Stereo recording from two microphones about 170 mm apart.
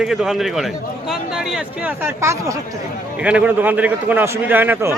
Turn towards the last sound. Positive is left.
turn(degrees=-15)  # may be behind; listen again after turning